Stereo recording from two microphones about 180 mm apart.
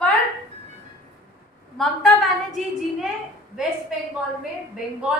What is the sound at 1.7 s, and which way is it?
Speech, centre (ahead or behind).